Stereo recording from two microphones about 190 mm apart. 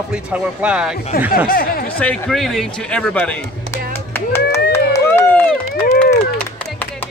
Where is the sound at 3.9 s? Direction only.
10° left (ahead or behind).